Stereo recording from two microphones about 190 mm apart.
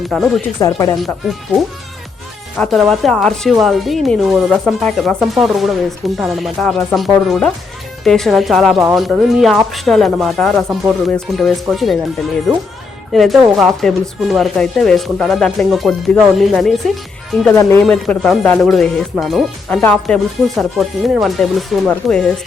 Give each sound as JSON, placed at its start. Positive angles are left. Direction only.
{"t": 0.1, "sound": "speech", "side_deg": 0}
{"t": 0.6, "sound": "speech", "side_deg": 15}
{"t": 1.0, "sound": "speech", "side_deg": 0}
{"t": 13.1, "sound": "speech", "side_deg": 0}